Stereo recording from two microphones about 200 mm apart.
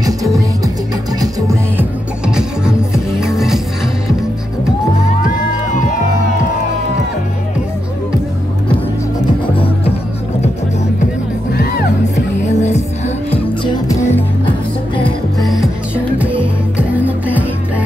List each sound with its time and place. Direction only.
1.2 s music: 15° right (ahead or behind)
2.2 s music: 5° right (ahead or behind)
12.4 s music: 35° left (ahead or behind)
13.8 s music: 15° left (ahead or behind)
15.4 s music: centre (ahead or behind)
16.7 s music: 10° right (ahead or behind)